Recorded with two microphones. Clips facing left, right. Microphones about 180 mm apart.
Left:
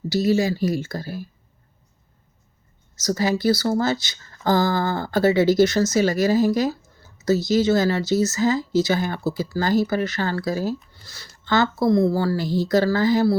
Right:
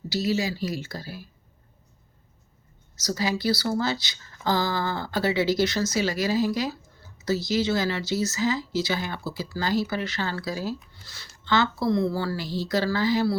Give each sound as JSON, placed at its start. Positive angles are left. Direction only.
{"t": 0.1, "sound": "speech", "side_deg": 50}
{"t": 2.9, "sound": "speech", "side_deg": 50}